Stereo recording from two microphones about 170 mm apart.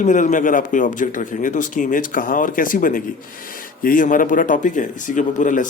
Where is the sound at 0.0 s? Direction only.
50° left (ahead or behind).